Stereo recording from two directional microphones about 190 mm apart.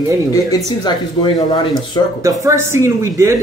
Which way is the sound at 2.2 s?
15° right (ahead or behind).